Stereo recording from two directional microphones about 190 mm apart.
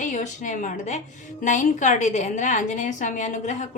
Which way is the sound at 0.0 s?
40° left (ahead or behind).